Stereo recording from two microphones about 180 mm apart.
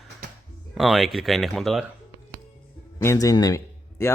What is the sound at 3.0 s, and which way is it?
A man's voice, 15° left (ahead or behind).